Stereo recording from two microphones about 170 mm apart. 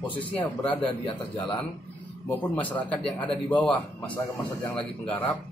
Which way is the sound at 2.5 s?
5° left (ahead or behind).